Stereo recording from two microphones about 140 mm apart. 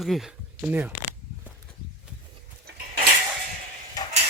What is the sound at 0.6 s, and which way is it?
Speech, 15° right (ahead or behind).